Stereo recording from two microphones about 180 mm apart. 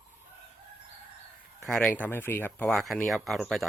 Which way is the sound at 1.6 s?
5° left (ahead or behind).